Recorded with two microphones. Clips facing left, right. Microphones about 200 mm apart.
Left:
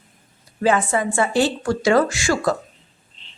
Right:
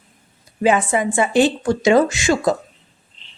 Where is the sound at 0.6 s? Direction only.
15° right (ahead or behind).